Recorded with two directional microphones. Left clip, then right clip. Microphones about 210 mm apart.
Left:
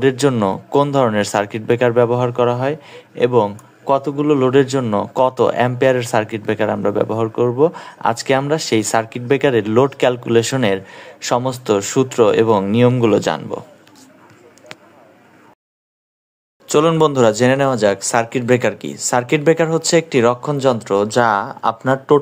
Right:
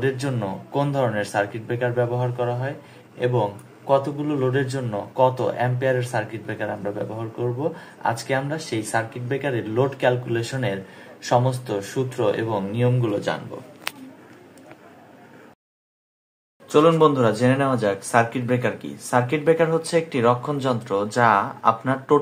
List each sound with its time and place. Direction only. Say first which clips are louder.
0.0 s a man's voice: left 10 dB; 50° left (ahead or behind)
16.6 s a man's voice: left 2 dB; 45° left (ahead or behind)